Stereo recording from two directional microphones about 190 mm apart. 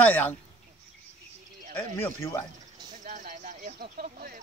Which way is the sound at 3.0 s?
45° right (ahead or behind).